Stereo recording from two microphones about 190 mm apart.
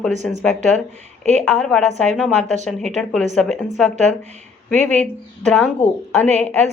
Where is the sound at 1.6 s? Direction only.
Centre (ahead or behind).